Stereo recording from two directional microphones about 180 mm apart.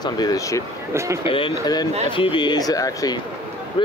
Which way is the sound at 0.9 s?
15° right (ahead or behind).